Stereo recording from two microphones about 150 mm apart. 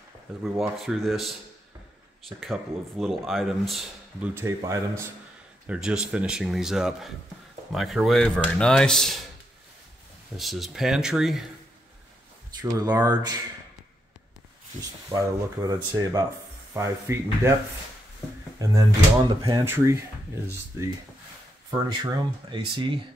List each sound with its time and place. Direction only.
0.4 s speech: centre (ahead or behind)
2.4 s speech: centre (ahead or behind)
4.4 s speech: 20° right (ahead or behind)
5.7 s speech: 5° right (ahead or behind)
10.3 s speech: centre (ahead or behind)
12.7 s speech: 20° right (ahead or behind)
15.0 s speech: 25° right (ahead or behind)
18.6 s speech: 20° right (ahead or behind)
21.6 s speech: 35° right (ahead or behind)